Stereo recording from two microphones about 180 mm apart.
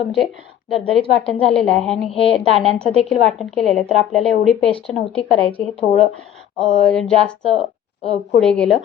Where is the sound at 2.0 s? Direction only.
30° left (ahead or behind).